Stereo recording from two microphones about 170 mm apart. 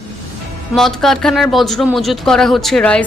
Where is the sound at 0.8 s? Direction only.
Centre (ahead or behind).